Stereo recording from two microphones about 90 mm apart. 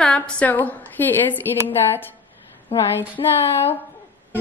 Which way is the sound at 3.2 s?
55° left (ahead or behind).